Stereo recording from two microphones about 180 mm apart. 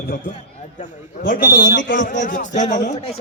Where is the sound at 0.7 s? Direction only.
40° left (ahead or behind).